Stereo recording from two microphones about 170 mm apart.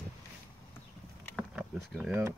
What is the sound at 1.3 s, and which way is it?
Power windows, 5° right (ahead or behind).